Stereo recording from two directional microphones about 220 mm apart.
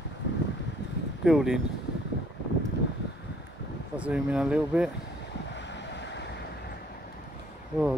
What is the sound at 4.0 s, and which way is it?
Speech, 5° right (ahead or behind).